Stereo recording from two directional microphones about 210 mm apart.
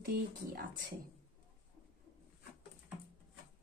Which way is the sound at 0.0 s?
45° right (ahead or behind).